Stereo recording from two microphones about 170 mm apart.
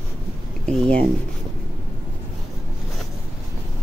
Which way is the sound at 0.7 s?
5° left (ahead or behind).